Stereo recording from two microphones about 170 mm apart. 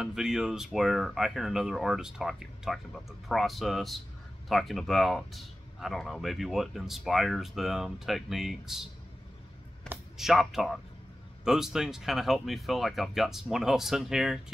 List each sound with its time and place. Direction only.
0.0 s speech: 5° right (ahead or behind)
9.8 s speech: centre (ahead or behind)